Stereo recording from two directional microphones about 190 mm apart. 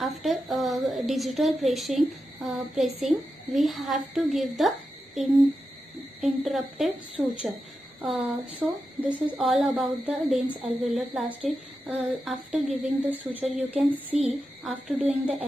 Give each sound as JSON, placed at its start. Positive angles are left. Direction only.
{"t": 0.0, "sound": "a woman's voice", "side_deg": 0}
{"t": 6.5, "sound": "a woman's voice", "side_deg": 0}